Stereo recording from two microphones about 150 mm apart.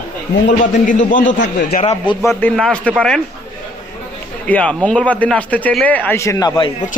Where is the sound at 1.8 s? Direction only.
35° left (ahead or behind).